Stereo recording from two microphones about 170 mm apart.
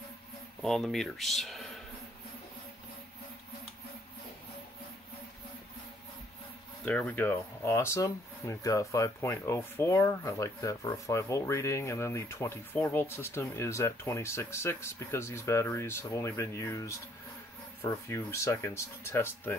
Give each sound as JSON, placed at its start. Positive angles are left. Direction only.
{"t": 0.6, "sound": "speech", "side_deg": 0}
{"t": 6.8, "sound": "speech", "side_deg": 10}